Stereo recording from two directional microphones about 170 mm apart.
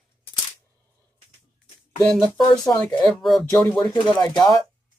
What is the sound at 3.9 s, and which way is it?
Speech, 30° left (ahead or behind).